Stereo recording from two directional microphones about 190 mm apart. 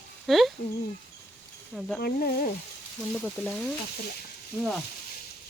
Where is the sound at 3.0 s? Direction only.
5° left (ahead or behind).